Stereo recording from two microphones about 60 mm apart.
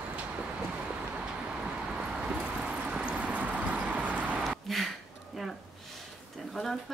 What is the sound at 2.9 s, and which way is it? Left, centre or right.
Clip-clop, right.